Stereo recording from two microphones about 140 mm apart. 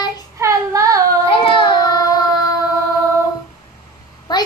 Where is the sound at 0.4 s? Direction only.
25° right (ahead or behind).